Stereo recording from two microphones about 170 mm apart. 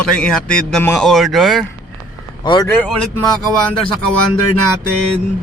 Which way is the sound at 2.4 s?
25° left (ahead or behind).